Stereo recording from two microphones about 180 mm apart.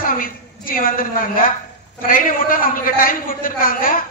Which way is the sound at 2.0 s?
50° left (ahead or behind).